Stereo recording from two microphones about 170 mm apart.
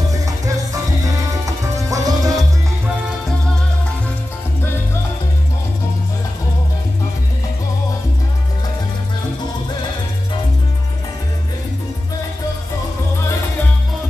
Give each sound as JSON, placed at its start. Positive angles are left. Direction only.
{"t": 1.0, "sound": "music", "side_deg": -20}